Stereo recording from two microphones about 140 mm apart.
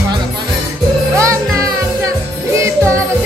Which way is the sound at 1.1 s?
20° right (ahead or behind).